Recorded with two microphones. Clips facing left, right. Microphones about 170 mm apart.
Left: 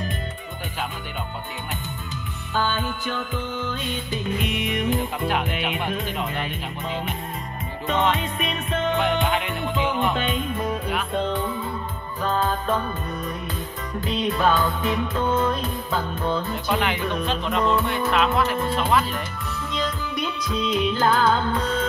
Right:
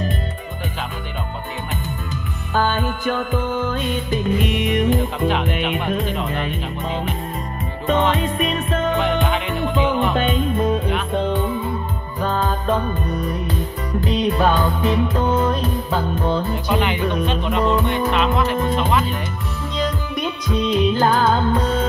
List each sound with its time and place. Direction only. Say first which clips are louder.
2.5 s music: right 5 dB; 50° right (ahead or behind)
7.8 s music: right 4 dB; 40° right (ahead or behind)
12.4 s music: right 4 dB; 15° right (ahead or behind)
16.8 s music: right 4 dB; centre (ahead or behind)
19.8 s music: right 5 dB; 40° right (ahead or behind)